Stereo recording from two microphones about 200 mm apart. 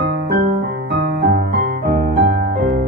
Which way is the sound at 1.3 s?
50° right (ahead or behind).